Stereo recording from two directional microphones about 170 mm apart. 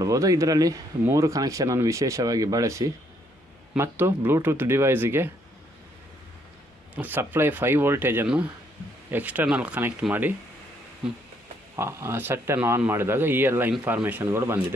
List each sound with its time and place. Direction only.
0.0 s speech: 20° right (ahead or behind)
7.0 s speech: 10° right (ahead or behind)
11.7 s speech: 15° right (ahead or behind)